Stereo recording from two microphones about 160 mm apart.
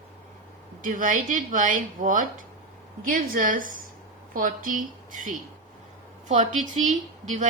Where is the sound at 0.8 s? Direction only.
55° right (ahead or behind).